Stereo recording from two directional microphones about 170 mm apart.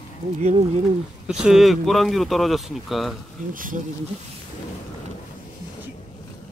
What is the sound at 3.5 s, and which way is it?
Speech, 50° right (ahead or behind).